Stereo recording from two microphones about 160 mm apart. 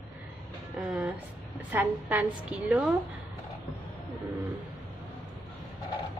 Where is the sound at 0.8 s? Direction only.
5° right (ahead or behind).